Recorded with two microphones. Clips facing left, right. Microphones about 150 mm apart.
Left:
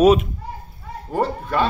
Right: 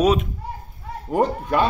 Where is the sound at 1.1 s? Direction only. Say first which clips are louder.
Right 2 dB; 15° right (ahead or behind).